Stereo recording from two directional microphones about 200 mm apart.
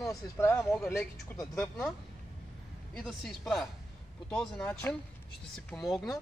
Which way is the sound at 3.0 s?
Centre (ahead or behind).